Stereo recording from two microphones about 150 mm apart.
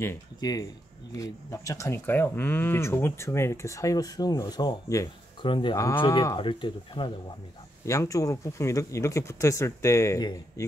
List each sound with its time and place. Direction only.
0.0 s speech: 20° left (ahead or behind)
7.8 s speech: 20° left (ahead or behind)